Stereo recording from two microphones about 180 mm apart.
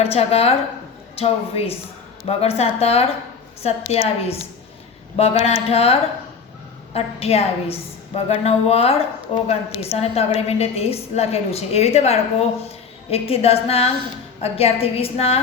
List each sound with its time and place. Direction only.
0.0 s a woman's voice: 35° left (ahead or behind)